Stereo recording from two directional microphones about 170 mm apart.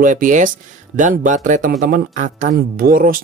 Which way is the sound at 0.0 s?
50° right (ahead or behind).